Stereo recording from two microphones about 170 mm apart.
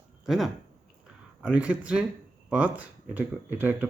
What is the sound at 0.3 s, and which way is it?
Speech, centre (ahead or behind).